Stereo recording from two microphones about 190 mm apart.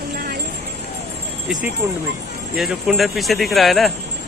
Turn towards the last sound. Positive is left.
turn(degrees=0)  # may be behind; listen again after turning